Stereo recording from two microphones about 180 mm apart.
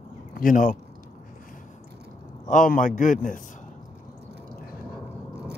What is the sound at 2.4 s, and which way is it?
Speech, 45° left (ahead or behind).